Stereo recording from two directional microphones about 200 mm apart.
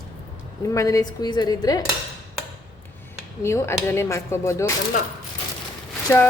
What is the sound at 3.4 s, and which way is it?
Speech, 15° left (ahead or behind).